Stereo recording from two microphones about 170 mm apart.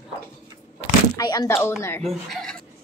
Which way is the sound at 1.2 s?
20° left (ahead or behind).